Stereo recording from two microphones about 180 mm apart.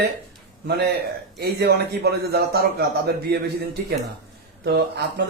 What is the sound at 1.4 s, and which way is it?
A man's voice, 65° right (ahead or behind).